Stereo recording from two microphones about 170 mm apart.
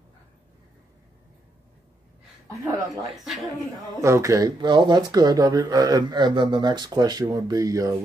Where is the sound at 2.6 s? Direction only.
20° right (ahead or behind).